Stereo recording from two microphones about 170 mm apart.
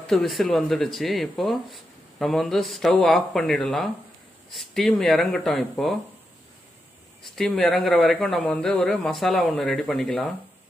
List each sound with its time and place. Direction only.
0.0 s speech: centre (ahead or behind)
7.2 s speech: centre (ahead or behind)